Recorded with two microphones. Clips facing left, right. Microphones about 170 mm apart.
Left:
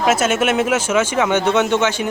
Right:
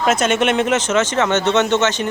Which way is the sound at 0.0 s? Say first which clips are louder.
Even; 5° left (ahead or behind).